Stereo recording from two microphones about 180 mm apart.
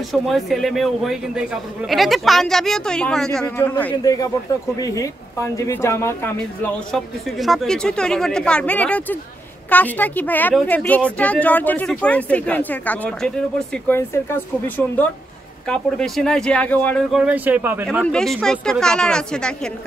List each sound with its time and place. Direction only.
0.1 s a man's voice: centre (ahead or behind)
4.0 s a woman's voice: 20° left (ahead or behind)
6.9 s a man's voice: centre (ahead or behind)
17.1 s speech: 5° right (ahead or behind)
18.0 s a man's voice: 5° left (ahead or behind)